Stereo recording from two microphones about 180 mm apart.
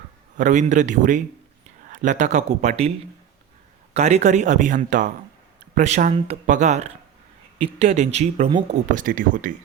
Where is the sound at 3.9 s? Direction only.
40° right (ahead or behind).